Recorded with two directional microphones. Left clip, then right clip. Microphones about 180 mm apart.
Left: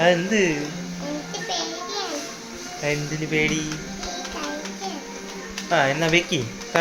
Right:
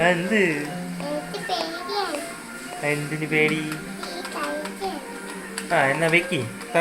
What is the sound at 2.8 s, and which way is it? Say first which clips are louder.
Speech: even; 15° left (ahead or behind).